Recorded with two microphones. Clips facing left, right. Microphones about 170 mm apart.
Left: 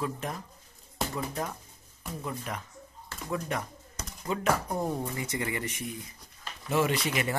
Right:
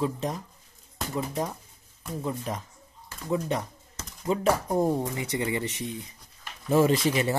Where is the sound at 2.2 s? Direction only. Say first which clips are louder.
Right 5 dB; 30° right (ahead or behind).